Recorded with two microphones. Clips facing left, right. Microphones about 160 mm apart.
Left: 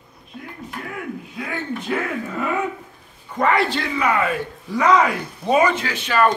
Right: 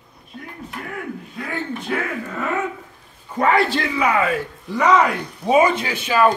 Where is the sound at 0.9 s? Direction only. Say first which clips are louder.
Even; centre (ahead or behind).